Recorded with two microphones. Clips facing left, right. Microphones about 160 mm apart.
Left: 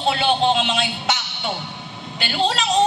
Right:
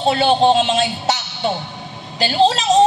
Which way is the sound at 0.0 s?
35° right (ahead or behind).